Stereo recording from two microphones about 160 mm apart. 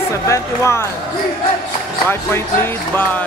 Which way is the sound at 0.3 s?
15° left (ahead or behind).